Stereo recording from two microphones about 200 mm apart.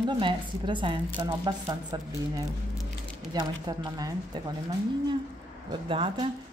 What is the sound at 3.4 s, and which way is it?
Speech, 20° right (ahead or behind).